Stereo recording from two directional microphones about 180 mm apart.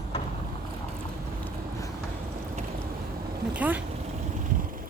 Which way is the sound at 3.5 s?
10° right (ahead or behind).